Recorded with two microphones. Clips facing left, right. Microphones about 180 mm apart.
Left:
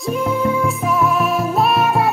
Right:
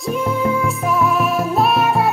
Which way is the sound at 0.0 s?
Centre (ahead or behind).